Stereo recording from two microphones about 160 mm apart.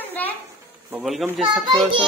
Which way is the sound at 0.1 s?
10° left (ahead or behind).